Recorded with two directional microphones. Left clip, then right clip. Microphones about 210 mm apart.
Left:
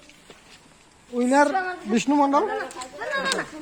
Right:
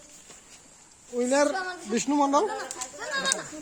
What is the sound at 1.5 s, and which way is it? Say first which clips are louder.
Speech: left 5 dB; 25° left (ahead or behind).